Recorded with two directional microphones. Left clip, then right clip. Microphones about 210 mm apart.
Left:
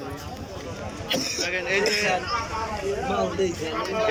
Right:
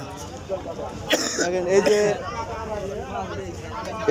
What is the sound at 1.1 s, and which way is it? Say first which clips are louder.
Cough: right 4 dB; 50° right (ahead or behind).